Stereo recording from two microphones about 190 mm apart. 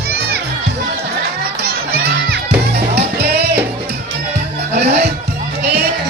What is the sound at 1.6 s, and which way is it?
Music, 55° right (ahead or behind).